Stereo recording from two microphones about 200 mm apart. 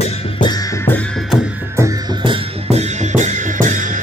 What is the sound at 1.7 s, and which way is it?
Music, 20° right (ahead or behind).